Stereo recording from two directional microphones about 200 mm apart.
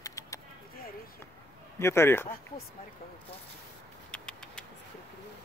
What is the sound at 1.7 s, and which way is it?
Speech, 10° left (ahead or behind).